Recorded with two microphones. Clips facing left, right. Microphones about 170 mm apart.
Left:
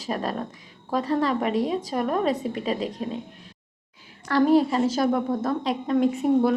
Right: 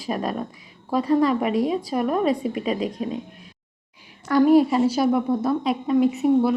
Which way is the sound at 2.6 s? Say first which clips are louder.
Right 2 dB; 35° left (ahead or behind).